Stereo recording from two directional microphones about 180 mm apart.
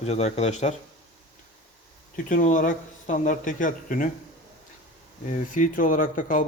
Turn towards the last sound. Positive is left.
turn(degrees=45)  # may be behind; listen again after turning